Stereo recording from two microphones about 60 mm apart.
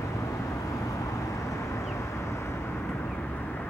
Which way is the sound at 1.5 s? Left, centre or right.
Left.